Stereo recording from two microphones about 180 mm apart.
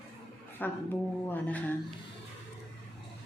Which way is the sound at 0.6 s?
10° left (ahead or behind).